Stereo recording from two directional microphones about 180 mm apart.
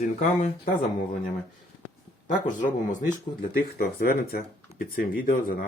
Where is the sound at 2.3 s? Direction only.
45° left (ahead or behind).